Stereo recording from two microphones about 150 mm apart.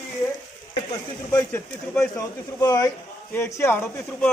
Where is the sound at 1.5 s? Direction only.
20° left (ahead or behind).